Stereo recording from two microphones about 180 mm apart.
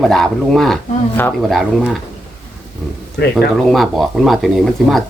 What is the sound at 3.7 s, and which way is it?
Speech, centre (ahead or behind).